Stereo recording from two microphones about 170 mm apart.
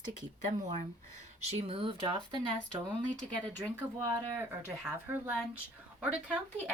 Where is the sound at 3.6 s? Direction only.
15° right (ahead or behind).